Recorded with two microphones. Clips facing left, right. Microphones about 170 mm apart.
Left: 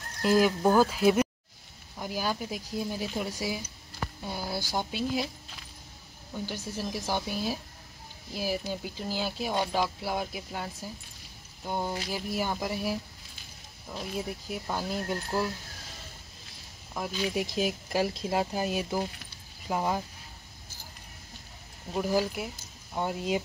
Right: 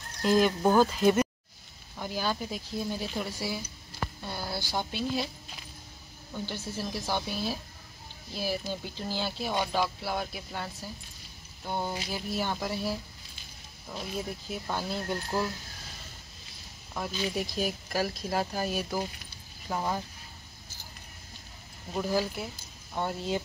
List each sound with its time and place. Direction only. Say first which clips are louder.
0.2 s speech: left 1 dB; 5° left (ahead or behind)
6.3 s speech: even; 10° left (ahead or behind)
14.5 s speech: even; 10° left (ahead or behind)
16.9 s speech: left 1 dB; 10° left (ahead or behind)
17.5 s speech: left 2 dB; 20° left (ahead or behind)
21.9 s speech: left 2 dB; 10° left (ahead or behind)